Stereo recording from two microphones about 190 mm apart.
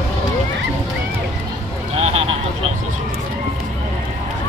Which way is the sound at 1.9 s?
35° right (ahead or behind).